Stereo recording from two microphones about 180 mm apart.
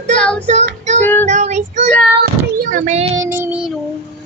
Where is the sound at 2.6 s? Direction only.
50° right (ahead or behind).